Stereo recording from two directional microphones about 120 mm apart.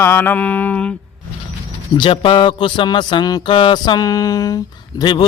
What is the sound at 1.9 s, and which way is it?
Speech, 45° left (ahead or behind).